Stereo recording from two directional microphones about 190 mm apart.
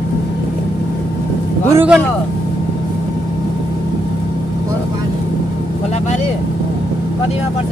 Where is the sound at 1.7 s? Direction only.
5° right (ahead or behind).